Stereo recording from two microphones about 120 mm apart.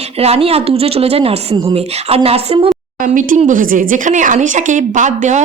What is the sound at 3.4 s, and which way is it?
A woman's voice, 90° right.